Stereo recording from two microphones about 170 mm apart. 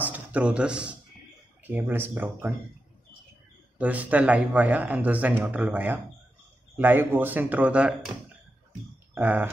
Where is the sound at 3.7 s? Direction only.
10° right (ahead or behind).